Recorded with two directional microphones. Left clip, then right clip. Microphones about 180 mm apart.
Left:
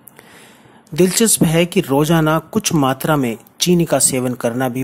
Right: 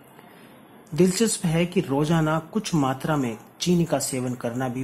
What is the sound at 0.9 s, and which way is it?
Speech, 25° left (ahead or behind).